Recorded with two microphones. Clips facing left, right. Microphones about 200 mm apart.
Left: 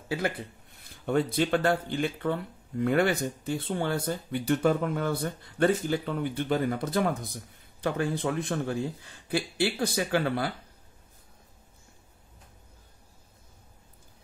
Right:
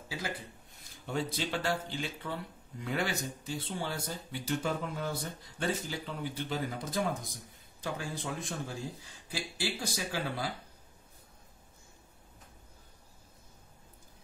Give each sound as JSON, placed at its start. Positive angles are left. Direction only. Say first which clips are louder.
{"t": 1.0, "sound": "speech", "louder": "left 9 dB", "side_deg": 55}